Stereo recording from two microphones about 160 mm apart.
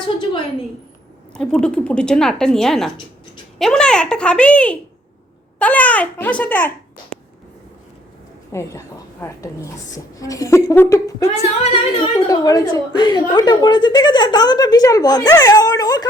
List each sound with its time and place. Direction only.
1.3 s a woman's voice: 5° left (ahead or behind)
8.5 s a woman's voice: 15° left (ahead or behind)
11.3 s a woman's voice: 35° left (ahead or behind)